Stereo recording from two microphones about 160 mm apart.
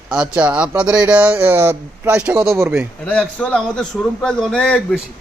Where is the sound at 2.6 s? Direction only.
15° right (ahead or behind).